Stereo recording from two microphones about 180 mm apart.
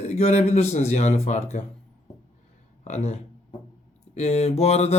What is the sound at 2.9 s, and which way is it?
Speech, 40° left (ahead or behind).